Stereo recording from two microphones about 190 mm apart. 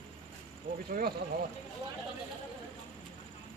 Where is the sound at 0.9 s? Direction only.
50° right (ahead or behind).